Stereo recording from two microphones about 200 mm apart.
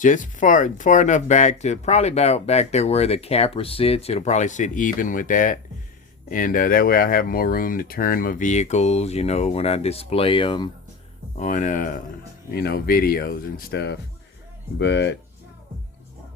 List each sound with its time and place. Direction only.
0.0 s speech: 40° left (ahead or behind); by 10.7 s 25° left (ahead or behind)
11.3 s speech: 40° left (ahead or behind); by 15.2 s 60° left (ahead or behind)